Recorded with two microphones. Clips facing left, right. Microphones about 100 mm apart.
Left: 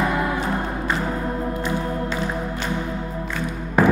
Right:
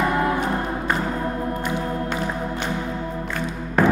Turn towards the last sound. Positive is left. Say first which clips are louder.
# left 1 dB
turn(degrees=5)  # may be behind; listen again after turning